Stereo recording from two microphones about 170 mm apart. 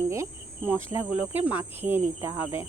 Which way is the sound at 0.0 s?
15° right (ahead or behind).